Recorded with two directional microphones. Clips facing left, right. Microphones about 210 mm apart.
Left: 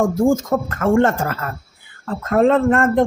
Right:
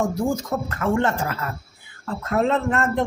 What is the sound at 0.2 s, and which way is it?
Speech, 50° left (ahead or behind).